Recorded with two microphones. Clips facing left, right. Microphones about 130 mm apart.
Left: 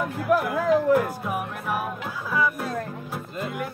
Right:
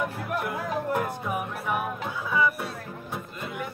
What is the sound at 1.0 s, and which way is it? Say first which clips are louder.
Music: left 1 dB; centre (ahead or behind).